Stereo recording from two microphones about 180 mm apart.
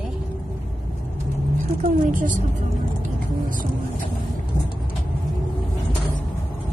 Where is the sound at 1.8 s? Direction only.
45° right (ahead or behind).